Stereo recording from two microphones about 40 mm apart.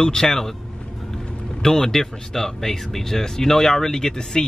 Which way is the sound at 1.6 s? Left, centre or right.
Centre.